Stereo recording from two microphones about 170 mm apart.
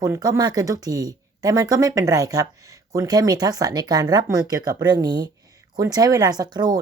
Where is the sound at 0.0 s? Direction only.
20° right (ahead or behind).